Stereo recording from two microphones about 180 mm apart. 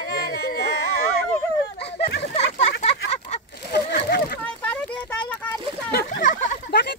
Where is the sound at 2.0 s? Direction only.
35° left (ahead or behind).